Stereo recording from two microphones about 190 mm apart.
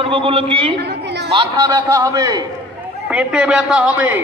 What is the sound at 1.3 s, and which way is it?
A woman's voice, 20° right (ahead or behind).